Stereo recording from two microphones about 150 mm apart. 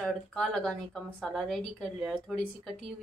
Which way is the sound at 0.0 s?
5° left (ahead or behind).